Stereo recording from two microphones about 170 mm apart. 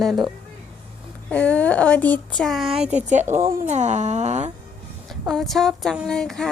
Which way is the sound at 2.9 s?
45° right (ahead or behind).